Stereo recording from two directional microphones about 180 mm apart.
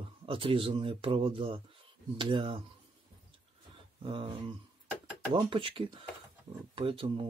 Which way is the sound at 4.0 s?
30° right (ahead or behind).